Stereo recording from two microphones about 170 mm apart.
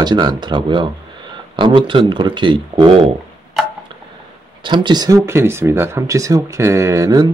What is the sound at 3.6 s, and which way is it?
Tick-tock, centre (ahead or behind).